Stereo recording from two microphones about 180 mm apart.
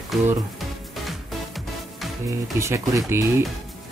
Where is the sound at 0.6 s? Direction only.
Centre (ahead or behind).